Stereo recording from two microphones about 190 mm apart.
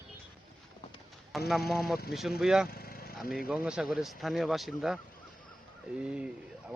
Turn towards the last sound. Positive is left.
turn(degrees=-5)  # may be behind; listen again after turning